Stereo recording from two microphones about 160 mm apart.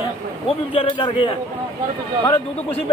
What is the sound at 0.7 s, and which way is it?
Speech, 30° left (ahead or behind).